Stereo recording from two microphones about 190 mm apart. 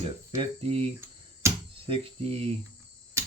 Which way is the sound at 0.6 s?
30° right (ahead or behind).